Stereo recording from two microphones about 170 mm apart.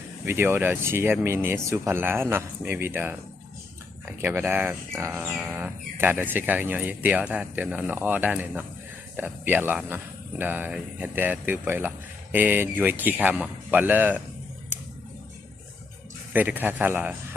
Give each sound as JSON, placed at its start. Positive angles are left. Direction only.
{"t": 0.3, "sound": "speech", "side_deg": -15}
{"t": 4.2, "sound": "speech", "side_deg": -15}
{"t": 16.3, "sound": "speech", "side_deg": -10}